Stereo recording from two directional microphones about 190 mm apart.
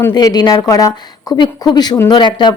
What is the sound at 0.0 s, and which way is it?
Speech, 20° left (ahead or behind).